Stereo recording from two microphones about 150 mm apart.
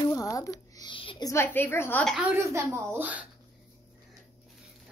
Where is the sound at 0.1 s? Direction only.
25° left (ahead or behind).